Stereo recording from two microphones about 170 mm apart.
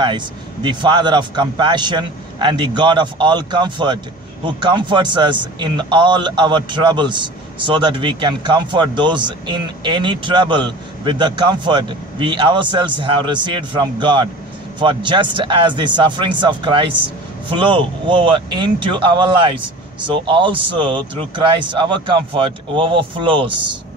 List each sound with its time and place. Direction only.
0.0 s a man's voice: 25° right (ahead or behind)